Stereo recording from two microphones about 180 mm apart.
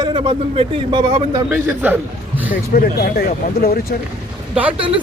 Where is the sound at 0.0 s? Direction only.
25° right (ahead or behind).